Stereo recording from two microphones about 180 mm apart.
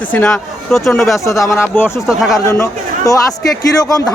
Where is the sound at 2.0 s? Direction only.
Centre (ahead or behind).